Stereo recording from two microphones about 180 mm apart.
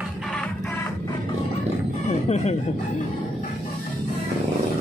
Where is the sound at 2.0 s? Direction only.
35° left (ahead or behind).